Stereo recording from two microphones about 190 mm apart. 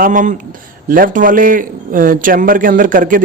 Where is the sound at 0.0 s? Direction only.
40° right (ahead or behind).